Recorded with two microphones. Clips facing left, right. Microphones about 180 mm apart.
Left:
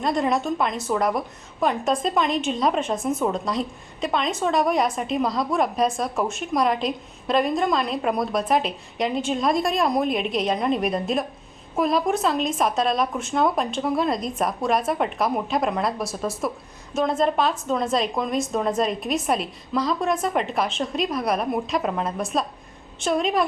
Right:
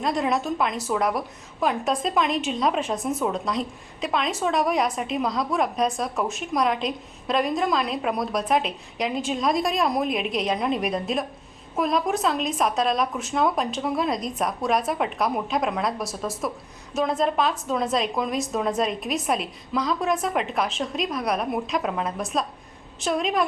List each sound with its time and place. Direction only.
0.0 s a woman's voice: centre (ahead or behind)